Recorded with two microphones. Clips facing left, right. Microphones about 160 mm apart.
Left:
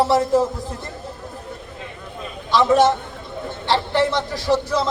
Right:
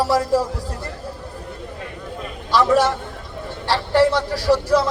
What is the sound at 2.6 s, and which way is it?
A man's voice, 20° left (ahead or behind).